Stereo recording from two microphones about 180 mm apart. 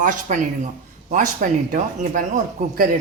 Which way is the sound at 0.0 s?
45° right (ahead or behind).